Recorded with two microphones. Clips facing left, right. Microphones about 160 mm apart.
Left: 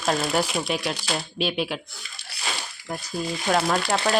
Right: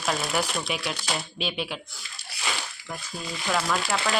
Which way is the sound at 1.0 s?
5° left (ahead or behind).